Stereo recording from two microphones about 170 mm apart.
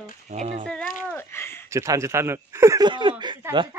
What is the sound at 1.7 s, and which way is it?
Speech, 15° right (ahead or behind).